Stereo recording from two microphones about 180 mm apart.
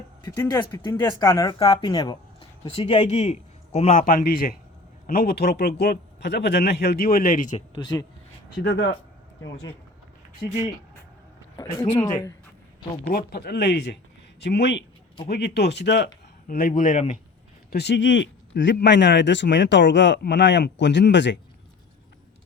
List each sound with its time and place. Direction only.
0.3 s a man's voice: 20° left (ahead or behind); by 7.6 s 45° left (ahead or behind)
7.8 s speech: 20° left (ahead or behind)
8.6 s speech: 75° left (ahead or behind)
11.5 s speech: 20° left (ahead or behind)
13.1 s speech: 60° left (ahead or behind)
16.5 s speech: 50° left (ahead or behind)
17.7 s speech: 65° left (ahead or behind)